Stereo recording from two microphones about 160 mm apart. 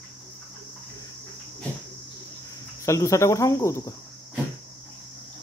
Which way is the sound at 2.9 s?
20° left (ahead or behind).